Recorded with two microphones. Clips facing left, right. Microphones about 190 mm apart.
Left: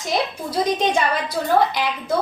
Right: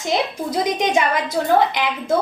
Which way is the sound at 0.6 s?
20° right (ahead or behind).